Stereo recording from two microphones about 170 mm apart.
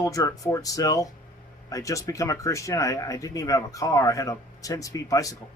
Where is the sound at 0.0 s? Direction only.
20° left (ahead or behind).